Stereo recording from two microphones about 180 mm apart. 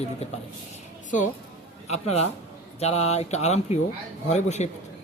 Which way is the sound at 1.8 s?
35° left (ahead or behind).